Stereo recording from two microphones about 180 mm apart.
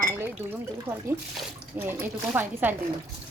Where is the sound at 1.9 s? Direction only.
10° right (ahead or behind).